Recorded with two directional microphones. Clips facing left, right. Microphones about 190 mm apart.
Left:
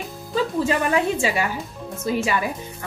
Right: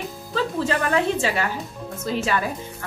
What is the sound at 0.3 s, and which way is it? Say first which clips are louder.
Speech: left 2 dB; 15° left (ahead or behind).